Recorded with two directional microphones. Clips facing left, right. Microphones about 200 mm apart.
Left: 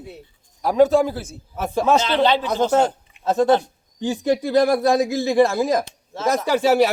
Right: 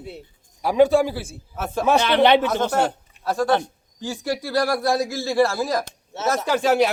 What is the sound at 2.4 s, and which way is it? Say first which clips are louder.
A man's voice: left 3 dB; 20° left (ahead or behind).